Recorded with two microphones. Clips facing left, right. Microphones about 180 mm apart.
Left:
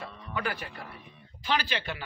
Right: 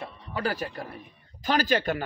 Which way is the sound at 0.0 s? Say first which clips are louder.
Right 3 dB; 35° right (ahead or behind).